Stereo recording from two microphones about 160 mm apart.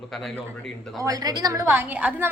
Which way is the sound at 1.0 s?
20° right (ahead or behind).